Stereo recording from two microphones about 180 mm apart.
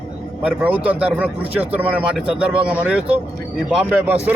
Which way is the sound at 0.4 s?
10° right (ahead or behind).